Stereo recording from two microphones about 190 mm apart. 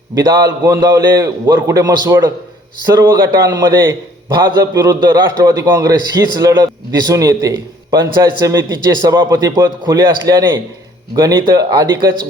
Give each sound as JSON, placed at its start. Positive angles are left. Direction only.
{"t": 0.1, "sound": "a man's voice", "side_deg": -20}